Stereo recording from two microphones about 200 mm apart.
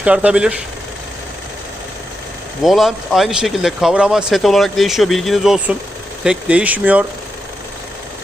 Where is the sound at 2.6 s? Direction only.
Centre (ahead or behind).